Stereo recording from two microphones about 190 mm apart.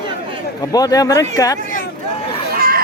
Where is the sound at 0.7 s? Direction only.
20° left (ahead or behind).